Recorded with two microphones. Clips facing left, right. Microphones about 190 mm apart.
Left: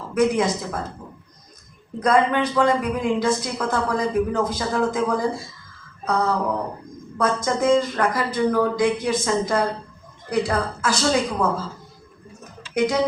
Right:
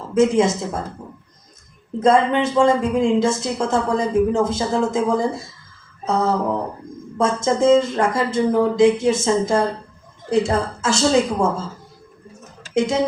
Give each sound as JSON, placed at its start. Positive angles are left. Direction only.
{"t": 0.1, "sound": "a woman's voice", "side_deg": -25}
{"t": 2.0, "sound": "a woman's voice", "side_deg": -25}
{"t": 12.7, "sound": "speech", "side_deg": -25}